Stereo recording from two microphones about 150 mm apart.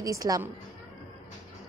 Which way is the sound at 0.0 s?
25° right (ahead or behind).